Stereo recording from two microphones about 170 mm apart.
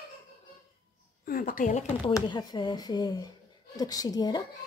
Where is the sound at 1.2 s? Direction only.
55° left (ahead or behind).